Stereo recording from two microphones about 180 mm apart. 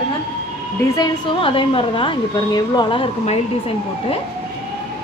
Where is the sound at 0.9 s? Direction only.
25° left (ahead or behind).